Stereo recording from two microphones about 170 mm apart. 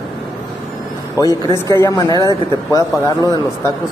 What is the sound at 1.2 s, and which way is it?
Speech, 20° left (ahead or behind).